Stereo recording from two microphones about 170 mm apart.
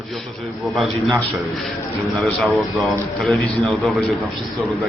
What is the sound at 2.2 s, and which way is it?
A man's voice, centre (ahead or behind).